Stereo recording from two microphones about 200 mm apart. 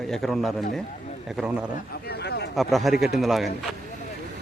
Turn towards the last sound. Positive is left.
turn(degrees=0)  # may be behind; listen again after turning